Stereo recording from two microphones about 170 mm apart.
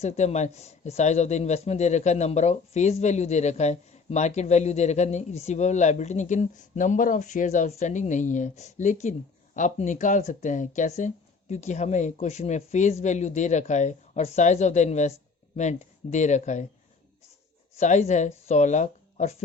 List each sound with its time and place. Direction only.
0.0 s speech: 40° left (ahead or behind)
17.7 s speech: 40° left (ahead or behind)